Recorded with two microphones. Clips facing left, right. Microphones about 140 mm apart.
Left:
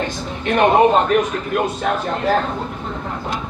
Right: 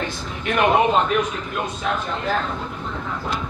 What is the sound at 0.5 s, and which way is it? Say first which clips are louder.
Speech: left 4 dB; 40° left (ahead or behind).